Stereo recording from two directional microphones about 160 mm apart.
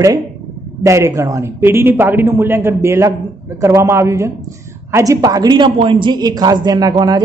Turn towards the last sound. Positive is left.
turn(degrees=-25)  # may be behind; listen again after turning